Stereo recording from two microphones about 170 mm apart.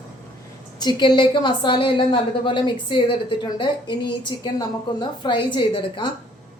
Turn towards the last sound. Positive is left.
turn(degrees=30)  # may be behind; listen again after turning